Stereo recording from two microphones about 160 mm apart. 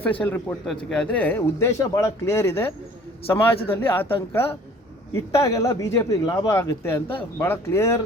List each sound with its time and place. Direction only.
0.0 s speech: 10° left (ahead or behind)
0.6 s speech: centre (ahead or behind)
3.7 s speech: 15° left (ahead or behind)